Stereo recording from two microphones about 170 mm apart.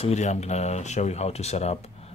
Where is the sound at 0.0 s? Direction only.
40° left (ahead or behind).